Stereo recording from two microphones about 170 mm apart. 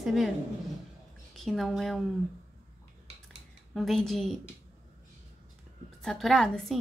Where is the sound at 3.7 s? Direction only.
Centre (ahead or behind).